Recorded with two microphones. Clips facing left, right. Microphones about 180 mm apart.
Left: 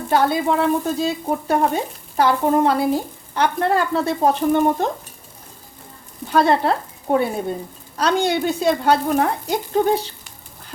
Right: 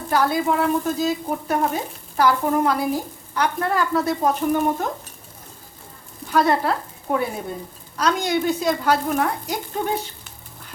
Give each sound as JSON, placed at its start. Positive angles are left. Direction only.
{"t": 0.1, "sound": "frying", "side_deg": 25}
{"t": 6.3, "sound": "speech", "side_deg": 25}